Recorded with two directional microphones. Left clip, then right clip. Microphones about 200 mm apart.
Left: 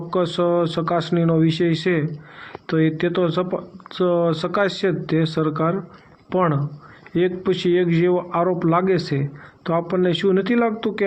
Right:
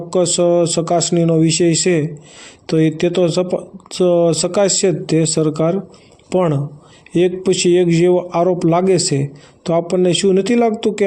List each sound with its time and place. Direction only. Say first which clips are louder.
0.1 s speech: right 6 dB; 35° right (ahead or behind)